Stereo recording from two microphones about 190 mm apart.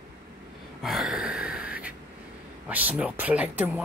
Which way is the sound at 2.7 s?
10° right (ahead or behind).